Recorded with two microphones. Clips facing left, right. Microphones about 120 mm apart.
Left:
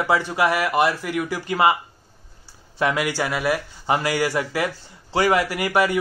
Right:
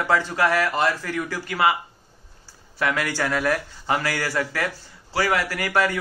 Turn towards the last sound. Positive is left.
turn(degrees=15)  # may be behind; listen again after turning